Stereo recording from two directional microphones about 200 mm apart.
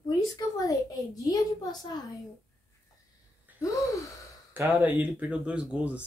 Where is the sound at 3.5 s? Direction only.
10° right (ahead or behind).